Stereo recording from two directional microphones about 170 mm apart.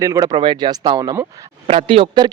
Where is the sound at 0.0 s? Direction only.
20° right (ahead or behind).